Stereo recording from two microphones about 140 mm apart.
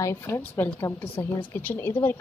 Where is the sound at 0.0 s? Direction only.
20° left (ahead or behind).